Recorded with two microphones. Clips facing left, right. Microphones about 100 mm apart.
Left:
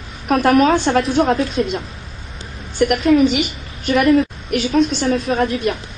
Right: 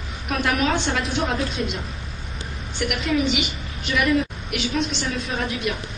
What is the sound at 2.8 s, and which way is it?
A woman's voice, 40° left (ahead or behind).